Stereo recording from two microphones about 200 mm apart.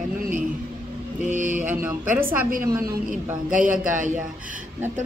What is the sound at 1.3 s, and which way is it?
Mantra, 40° right (ahead or behind).